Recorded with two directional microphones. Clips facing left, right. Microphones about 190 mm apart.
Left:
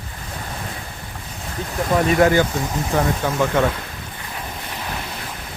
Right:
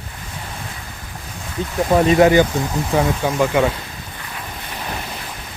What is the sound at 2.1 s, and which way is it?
Speech, 20° right (ahead or behind).